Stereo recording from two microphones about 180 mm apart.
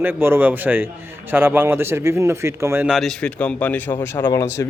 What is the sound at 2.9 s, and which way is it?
Speech, centre (ahead or behind).